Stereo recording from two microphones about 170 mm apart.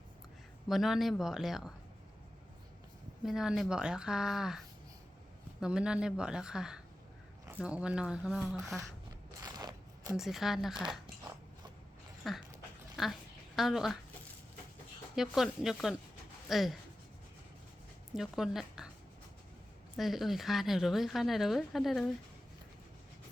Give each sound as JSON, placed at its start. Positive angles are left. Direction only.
{"t": 0.7, "sound": "speech", "side_deg": 0}
{"t": 3.2, "sound": "speech", "side_deg": -5}
{"t": 9.4, "sound": "zipper", "side_deg": -20}
{"t": 10.2, "sound": "speech", "side_deg": 0}
{"t": 12.2, "sound": "speech", "side_deg": 0}
{"t": 15.1, "sound": "speech", "side_deg": 0}
{"t": 18.1, "sound": "a woman's voice", "side_deg": 0}
{"t": 20.0, "sound": "speech", "side_deg": 0}